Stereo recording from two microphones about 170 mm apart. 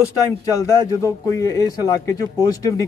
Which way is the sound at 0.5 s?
20° left (ahead or behind).